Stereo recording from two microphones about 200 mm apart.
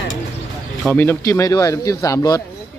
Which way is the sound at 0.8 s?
10° left (ahead or behind).